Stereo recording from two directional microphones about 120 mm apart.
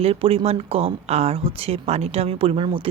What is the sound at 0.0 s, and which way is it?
Speech, 50° right (ahead or behind).